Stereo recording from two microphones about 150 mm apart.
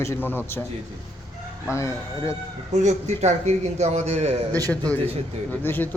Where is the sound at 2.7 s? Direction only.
50° right (ahead or behind).